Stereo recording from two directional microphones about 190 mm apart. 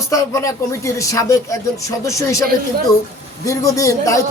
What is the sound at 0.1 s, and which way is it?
A woman's voice, 15° left (ahead or behind).